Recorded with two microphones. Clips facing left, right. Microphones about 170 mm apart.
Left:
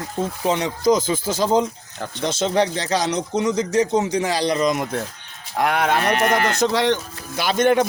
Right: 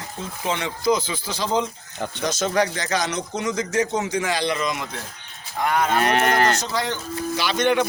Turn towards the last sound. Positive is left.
turn(degrees=45)  # may be behind; listen again after turning